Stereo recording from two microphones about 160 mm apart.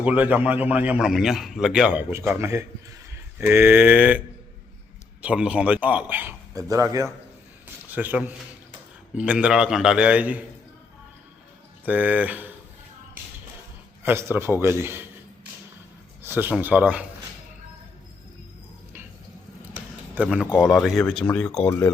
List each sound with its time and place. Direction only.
0.0 s a man's voice: 10° right (ahead or behind)
5.2 s a man's voice: 5° right (ahead or behind)
11.9 s a man's voice: 10° right (ahead or behind)
14.0 s a man's voice: 15° right (ahead or behind)
16.2 s a man's voice: 10° right (ahead or behind)
20.3 s a man's voice: 5° right (ahead or behind)
21.7 s speech: 15° left (ahead or behind)